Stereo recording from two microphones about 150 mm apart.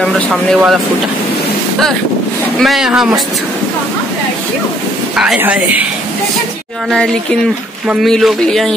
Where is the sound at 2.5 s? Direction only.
Centre (ahead or behind).